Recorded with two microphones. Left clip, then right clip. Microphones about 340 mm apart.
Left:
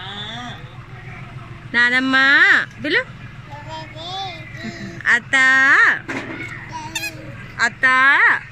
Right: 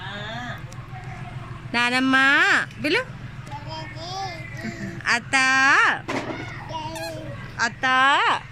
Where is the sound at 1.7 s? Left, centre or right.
Centre.